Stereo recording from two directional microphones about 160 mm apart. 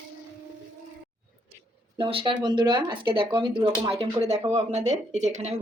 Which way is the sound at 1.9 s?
35° right (ahead or behind).